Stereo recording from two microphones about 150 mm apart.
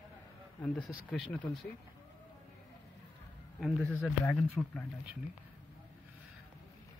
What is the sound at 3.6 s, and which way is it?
Speech, 5° left (ahead or behind).